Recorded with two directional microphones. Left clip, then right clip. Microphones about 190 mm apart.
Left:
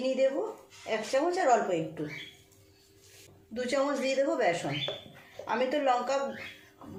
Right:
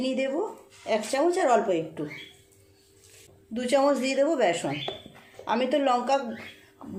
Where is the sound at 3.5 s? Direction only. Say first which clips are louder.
Right 7 dB; 50° right (ahead or behind).